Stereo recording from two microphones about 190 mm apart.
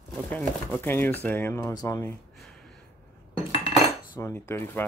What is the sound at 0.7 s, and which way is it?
Speech, 10° left (ahead or behind).